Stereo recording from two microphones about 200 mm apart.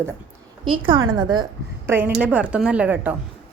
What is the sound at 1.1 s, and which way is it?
Speech, 20° right (ahead or behind).